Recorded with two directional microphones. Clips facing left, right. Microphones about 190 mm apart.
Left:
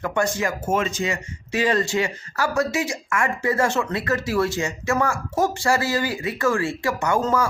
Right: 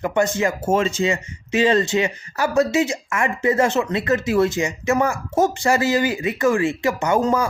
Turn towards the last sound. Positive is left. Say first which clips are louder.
# right 2 dB
turn(degrees=-20)  # may be behind; listen again after turning